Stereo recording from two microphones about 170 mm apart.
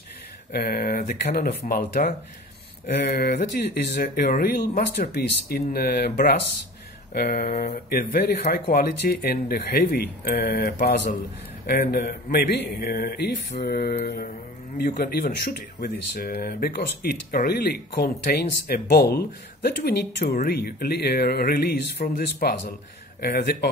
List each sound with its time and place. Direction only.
0.5 s speech: 60° left (ahead or behind)